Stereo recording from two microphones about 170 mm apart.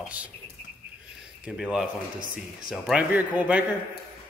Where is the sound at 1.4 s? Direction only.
5° right (ahead or behind).